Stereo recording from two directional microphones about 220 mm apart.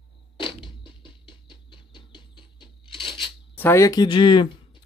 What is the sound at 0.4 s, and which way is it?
Patter, 25° left (ahead or behind).